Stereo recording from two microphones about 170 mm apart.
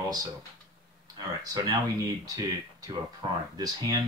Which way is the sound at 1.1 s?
20° right (ahead or behind).